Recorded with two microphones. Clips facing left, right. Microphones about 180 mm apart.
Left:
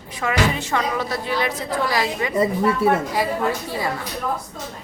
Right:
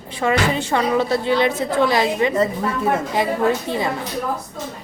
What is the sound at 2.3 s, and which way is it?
Speech, 10° left (ahead or behind).